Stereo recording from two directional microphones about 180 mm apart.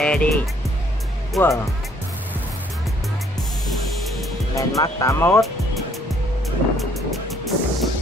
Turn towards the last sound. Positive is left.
turn(degrees=0)  # may be behind; listen again after turning